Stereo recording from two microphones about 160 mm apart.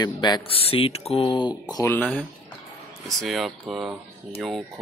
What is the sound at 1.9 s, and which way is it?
Speech, 10° left (ahead or behind).